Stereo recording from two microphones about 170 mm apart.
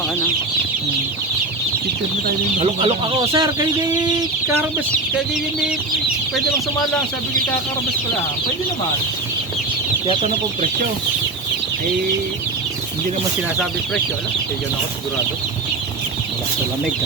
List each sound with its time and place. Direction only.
2.6 s speech: 35° right (ahead or behind)
3.2 s speech: 20° right (ahead or behind)